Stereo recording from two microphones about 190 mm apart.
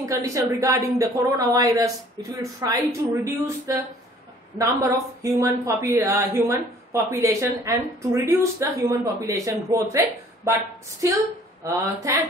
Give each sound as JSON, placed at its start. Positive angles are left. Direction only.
{"t": 0.2, "sound": "speech", "side_deg": -15}
{"t": 11.0, "sound": "speech", "side_deg": -15}